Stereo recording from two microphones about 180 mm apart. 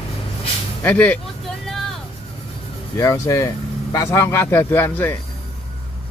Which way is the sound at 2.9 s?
15° left (ahead or behind).